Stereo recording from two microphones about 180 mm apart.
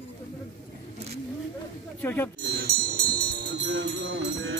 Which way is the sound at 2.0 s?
10° left (ahead or behind).